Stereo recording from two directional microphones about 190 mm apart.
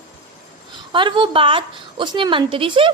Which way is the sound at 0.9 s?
25° right (ahead or behind).